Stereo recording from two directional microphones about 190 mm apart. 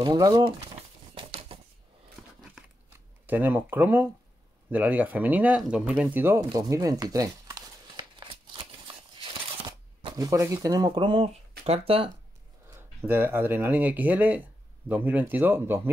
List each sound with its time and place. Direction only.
0.0 s speech: 20° right (ahead or behind)
1.1 s a sound: 30° right (ahead or behind)
3.3 s speech: 10° right (ahead or behind)
6.5 s a sound: 20° right (ahead or behind)
11.6 s speech: 30° right (ahead or behind)
12.6 s speech: 10° right (ahead or behind)